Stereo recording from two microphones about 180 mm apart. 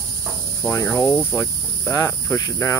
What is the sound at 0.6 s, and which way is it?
Speech, 15° left (ahead or behind).